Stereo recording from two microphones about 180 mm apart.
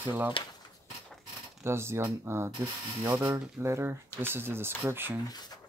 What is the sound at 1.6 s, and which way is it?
Speech, 15° right (ahead or behind).